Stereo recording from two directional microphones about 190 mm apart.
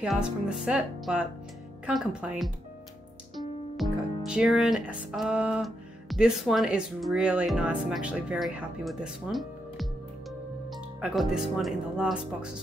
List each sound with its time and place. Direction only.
0.0 s speech: 5° right (ahead or behind)